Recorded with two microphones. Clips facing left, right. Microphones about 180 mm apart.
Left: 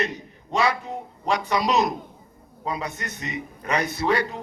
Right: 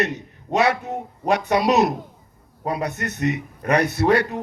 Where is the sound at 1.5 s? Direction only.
45° right (ahead or behind).